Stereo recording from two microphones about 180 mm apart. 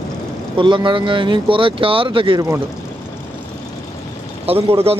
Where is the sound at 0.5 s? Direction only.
25° right (ahead or behind).